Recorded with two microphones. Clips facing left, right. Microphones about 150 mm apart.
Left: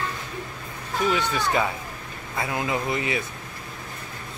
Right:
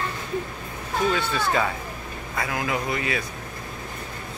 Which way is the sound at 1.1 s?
15° left (ahead or behind).